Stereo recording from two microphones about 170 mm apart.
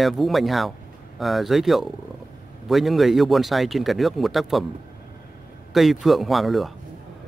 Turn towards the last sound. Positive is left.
turn(degrees=0)  # may be behind; listen again after turning